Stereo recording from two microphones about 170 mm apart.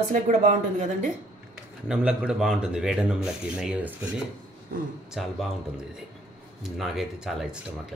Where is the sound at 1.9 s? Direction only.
5° right (ahead or behind).